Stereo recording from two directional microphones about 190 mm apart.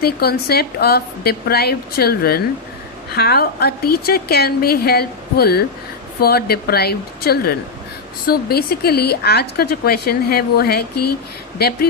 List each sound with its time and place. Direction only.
0.0 s a woman's voice: 55° left (ahead or behind)